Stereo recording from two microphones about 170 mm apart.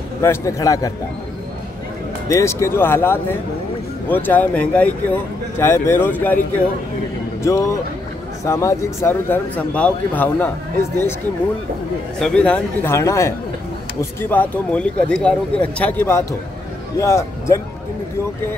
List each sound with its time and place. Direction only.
0.2 s a man's voice: 15° left (ahead or behind)
2.2 s a man's voice: 15° left (ahead or behind)
7.4 s a man's voice: 15° left (ahead or behind)
12.2 s a man's voice: 5° left (ahead or behind)
14.3 s a man's voice: 10° left (ahead or behind)